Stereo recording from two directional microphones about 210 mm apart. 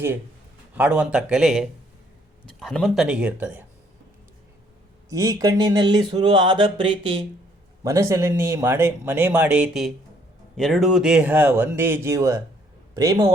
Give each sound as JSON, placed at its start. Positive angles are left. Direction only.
{"t": 0.8, "sound": "speech", "side_deg": -5}
{"t": 5.0, "sound": "speech", "side_deg": -15}
{"t": 7.9, "sound": "speech", "side_deg": -15}